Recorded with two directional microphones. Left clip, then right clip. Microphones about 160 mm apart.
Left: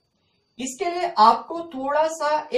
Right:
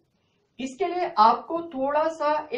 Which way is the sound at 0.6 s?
20° right (ahead or behind).